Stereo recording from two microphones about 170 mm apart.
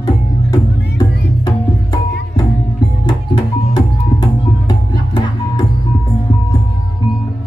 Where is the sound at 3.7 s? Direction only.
25° left (ahead or behind).